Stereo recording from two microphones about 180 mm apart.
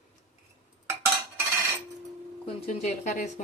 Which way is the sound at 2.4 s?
40° left (ahead or behind).